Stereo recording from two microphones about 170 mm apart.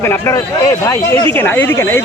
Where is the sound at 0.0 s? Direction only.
15° left (ahead or behind).